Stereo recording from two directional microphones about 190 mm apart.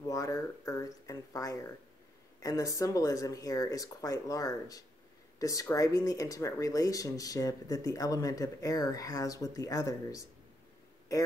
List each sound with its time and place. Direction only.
0.0 s speech: 20° left (ahead or behind)